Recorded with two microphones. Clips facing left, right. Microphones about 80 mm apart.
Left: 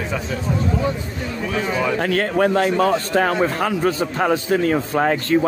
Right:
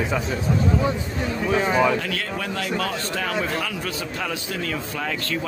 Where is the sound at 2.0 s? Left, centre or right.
Left.